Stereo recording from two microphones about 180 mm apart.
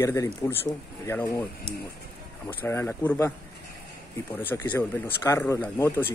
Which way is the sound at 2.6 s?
15° left (ahead or behind).